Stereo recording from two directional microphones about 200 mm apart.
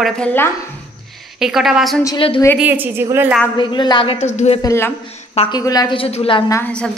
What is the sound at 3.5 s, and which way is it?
A woman's voice, 25° left (ahead or behind).